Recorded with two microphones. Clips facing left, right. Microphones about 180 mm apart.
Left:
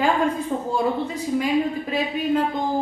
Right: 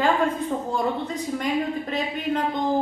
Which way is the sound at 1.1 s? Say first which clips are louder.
Left 4 dB; 5° left (ahead or behind).